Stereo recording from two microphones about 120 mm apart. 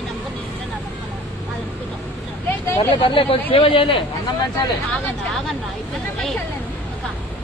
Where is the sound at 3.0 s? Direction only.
45° left (ahead or behind).